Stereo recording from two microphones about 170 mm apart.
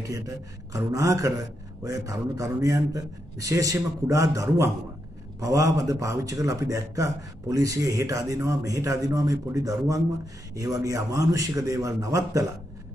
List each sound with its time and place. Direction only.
0.7 s a man's voice: 20° right (ahead or behind)